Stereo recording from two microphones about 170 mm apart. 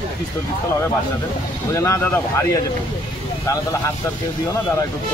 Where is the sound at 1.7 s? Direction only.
15° left (ahead or behind).